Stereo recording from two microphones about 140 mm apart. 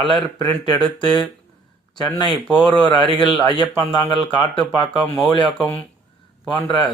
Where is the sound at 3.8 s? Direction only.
30° left (ahead or behind).